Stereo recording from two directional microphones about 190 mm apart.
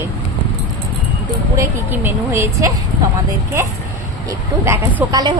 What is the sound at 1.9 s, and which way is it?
Speech, 10° right (ahead or behind).